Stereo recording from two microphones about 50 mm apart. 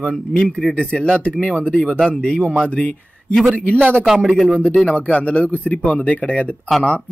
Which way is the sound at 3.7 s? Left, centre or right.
Right.